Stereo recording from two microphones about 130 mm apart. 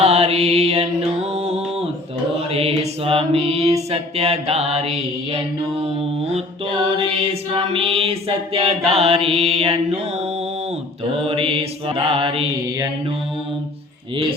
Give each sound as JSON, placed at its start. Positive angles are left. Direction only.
{"t": 0.0, "sound": "mantra", "side_deg": -55}
{"t": 1.3, "sound": "music", "side_deg": -55}
{"t": 2.5, "sound": "mantra", "side_deg": -50}
{"t": 6.8, "sound": "a sound", "side_deg": -40}
{"t": 7.5, "sound": "mantra", "side_deg": -45}
{"t": 11.2, "sound": "mantra", "side_deg": -45}